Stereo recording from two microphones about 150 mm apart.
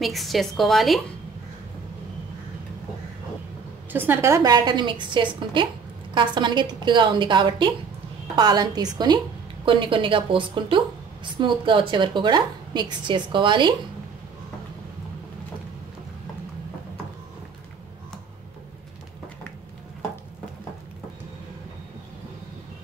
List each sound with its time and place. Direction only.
0.0 s a woman's voice: centre (ahead or behind)
3.9 s a woman's voice: 15° right (ahead or behind); by 13.7 s 30° right (ahead or behind)